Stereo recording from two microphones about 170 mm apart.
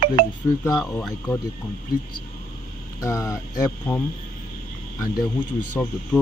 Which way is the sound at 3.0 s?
20° left (ahead or behind).